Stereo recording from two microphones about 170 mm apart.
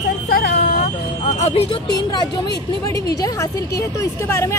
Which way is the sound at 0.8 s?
40° left (ahead or behind).